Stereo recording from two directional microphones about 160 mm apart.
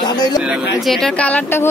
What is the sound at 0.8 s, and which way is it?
Speech, centre (ahead or behind).